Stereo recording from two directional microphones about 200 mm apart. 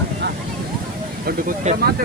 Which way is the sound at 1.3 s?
45° right (ahead or behind).